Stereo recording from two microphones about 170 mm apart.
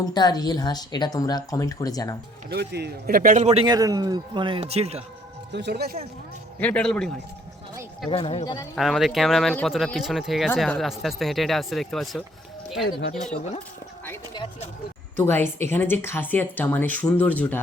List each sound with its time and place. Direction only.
0.0 s a woman's voice: 25° left (ahead or behind)
2.5 s a man's voice: 75° right (ahead or behind); by 3.6 s 45° right (ahead or behind)
3.6 s a man's voice: 20° right (ahead or behind); by 5.0 s 40° right (ahead or behind)
5.5 s speech: 90° right; by 6.0 s 70° right (ahead or behind)
6.6 s speech: 5° left (ahead or behind)
8.1 s a man's voice: 35° left (ahead or behind)
8.7 s speech: centre (ahead or behind)
15.2 s speech: 10° left (ahead or behind)